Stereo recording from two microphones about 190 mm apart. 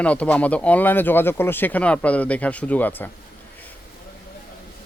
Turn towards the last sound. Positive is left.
turn(degrees=10)  # may be behind; listen again after turning